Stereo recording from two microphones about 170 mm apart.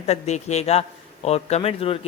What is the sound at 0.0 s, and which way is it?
A man's voice, 40° left (ahead or behind).